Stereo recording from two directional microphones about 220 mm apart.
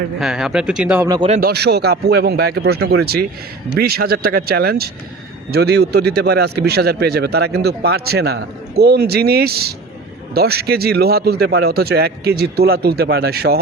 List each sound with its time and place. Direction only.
0.2 s speech: centre (ahead or behind)
1.0 s speech: 15° right (ahead or behind)
1.3 s speech: 45° right (ahead or behind)
3.8 s speech: 45° right (ahead or behind)